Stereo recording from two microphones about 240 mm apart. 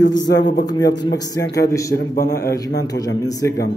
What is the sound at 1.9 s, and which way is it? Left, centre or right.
Speech, left.